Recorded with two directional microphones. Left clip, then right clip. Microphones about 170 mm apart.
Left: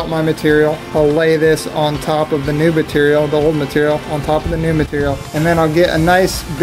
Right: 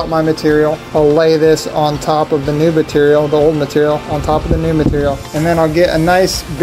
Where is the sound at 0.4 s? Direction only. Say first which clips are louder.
Left 2 dB; 25° left (ahead or behind).